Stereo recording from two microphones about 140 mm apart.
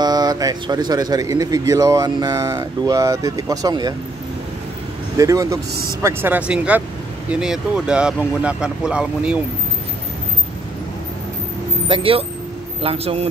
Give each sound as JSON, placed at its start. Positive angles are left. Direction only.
{"t": 0.0, "sound": "speech", "side_deg": -30}
{"t": 5.1, "sound": "speech", "side_deg": -25}
{"t": 6.0, "sound": "speech", "side_deg": -15}
{"t": 11.9, "sound": "a man's voice", "side_deg": -40}